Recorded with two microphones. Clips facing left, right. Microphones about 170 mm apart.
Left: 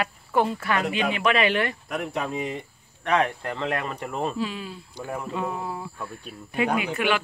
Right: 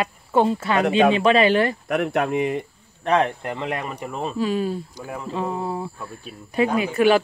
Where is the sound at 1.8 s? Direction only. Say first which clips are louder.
Right 7 dB; 65° right (ahead or behind).